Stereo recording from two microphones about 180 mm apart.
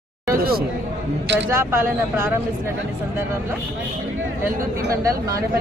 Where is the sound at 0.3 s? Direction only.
55° right (ahead or behind).